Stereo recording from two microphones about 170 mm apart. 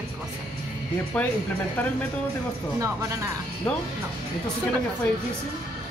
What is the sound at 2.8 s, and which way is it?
Speech, 20° right (ahead or behind).